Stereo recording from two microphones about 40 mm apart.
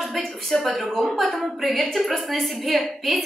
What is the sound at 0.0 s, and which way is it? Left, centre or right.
A woman's voice, centre.